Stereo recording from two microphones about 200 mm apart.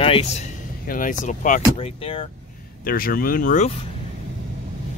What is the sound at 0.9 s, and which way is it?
Speech, 40° left (ahead or behind).